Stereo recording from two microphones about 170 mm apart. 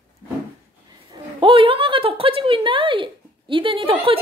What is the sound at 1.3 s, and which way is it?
A woman's voice, 30° right (ahead or behind).